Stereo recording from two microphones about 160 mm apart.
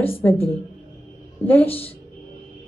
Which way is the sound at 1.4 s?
10° left (ahead or behind).